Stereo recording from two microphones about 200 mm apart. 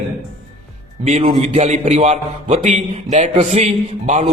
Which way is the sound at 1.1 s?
30° right (ahead or behind).